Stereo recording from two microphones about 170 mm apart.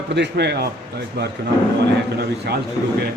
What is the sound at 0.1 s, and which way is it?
Speech, 85° right.